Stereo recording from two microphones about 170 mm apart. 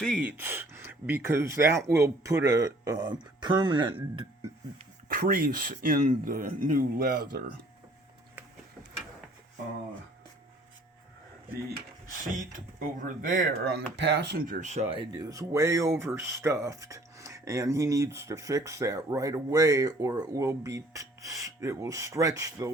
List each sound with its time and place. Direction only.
0.0 s speech: centre (ahead or behind)
0.3 s speech: 10° right (ahead or behind)
5.0 s speech: 55° right (ahead or behind)
12.3 s speech: 50° right (ahead or behind); by 22.7 s 20° right (ahead or behind)